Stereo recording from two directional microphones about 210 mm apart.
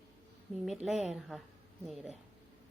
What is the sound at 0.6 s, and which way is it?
Speech, centre (ahead or behind).